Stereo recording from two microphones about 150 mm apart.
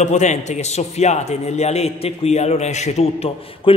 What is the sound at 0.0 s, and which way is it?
A man's voice, 50° left (ahead or behind).